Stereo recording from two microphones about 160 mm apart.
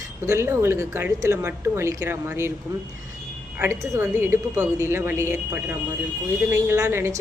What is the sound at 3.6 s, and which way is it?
A woman's voice, 15° right (ahead or behind).